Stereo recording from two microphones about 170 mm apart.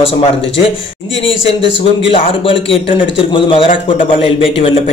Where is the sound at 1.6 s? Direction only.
90° left.